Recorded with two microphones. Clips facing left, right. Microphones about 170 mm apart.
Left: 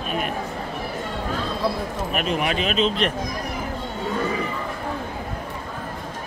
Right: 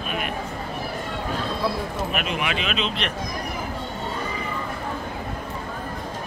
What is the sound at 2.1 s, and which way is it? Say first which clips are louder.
Speech: left 6 dB; 40° left (ahead or behind).